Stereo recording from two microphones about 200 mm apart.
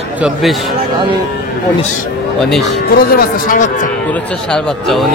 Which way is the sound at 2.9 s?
50° left (ahead or behind).